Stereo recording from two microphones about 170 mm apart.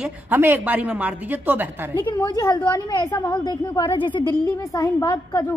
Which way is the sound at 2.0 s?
25° left (ahead or behind).